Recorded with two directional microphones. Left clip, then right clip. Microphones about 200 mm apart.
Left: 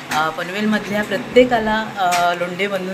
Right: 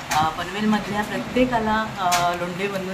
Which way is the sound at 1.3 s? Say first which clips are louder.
Left 7 dB; 15° left (ahead or behind).